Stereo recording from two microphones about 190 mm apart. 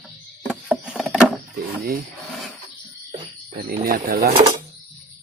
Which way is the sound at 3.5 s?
50° right (ahead or behind).